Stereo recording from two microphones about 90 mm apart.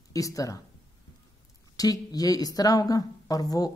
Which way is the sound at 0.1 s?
40° left (ahead or behind).